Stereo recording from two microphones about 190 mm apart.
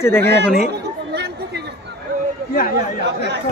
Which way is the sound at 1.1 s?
60° right (ahead or behind).